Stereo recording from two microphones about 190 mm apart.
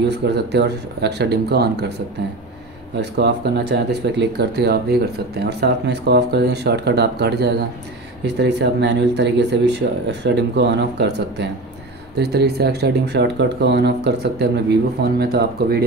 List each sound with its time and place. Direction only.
0.1 s speech: 65° right (ahead or behind)
3.0 s speech: 65° right (ahead or behind)